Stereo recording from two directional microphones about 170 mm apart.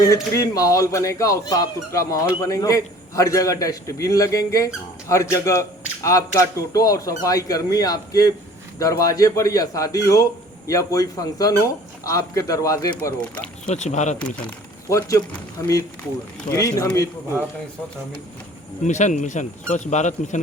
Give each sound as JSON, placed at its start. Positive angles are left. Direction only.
{"t": 0.0, "sound": "a man's voice", "side_deg": 20}
{"t": 13.7, "sound": "speech", "side_deg": 45}
{"t": 14.2, "sound": "speech", "side_deg": 10}
{"t": 16.6, "sound": "a man's voice", "side_deg": 20}
{"t": 18.9, "sound": "speech", "side_deg": 45}